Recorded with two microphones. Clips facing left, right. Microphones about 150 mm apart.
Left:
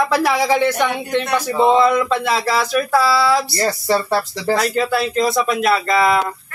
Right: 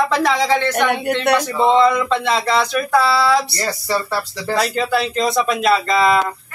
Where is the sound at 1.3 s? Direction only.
10° left (ahead or behind).